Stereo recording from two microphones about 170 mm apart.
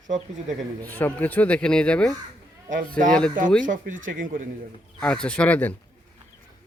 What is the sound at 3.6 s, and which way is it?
Speech, 50° right (ahead or behind).